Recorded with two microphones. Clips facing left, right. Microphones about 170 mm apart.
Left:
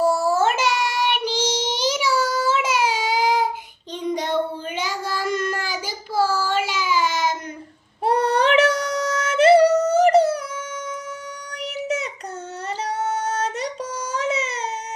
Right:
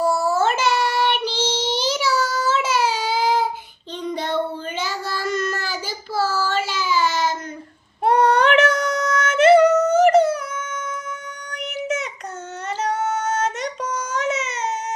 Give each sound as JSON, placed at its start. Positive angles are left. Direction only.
{"t": 0.0, "sound": "child singing", "side_deg": 10}
{"t": 8.0, "sound": "child singing", "side_deg": 30}
{"t": 11.5, "sound": "a sound", "side_deg": 35}
{"t": 12.8, "sound": "child singing", "side_deg": 30}